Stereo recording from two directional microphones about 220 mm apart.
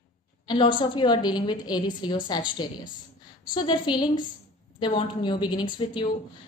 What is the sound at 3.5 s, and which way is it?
A woman's voice, 20° left (ahead or behind).